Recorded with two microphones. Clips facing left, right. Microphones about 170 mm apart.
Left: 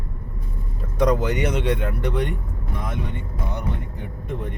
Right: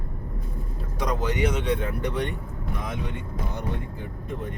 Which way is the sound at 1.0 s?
60° left (ahead or behind).